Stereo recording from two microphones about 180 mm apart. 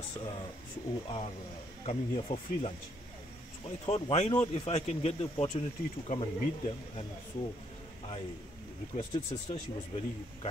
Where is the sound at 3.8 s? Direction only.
35° left (ahead or behind).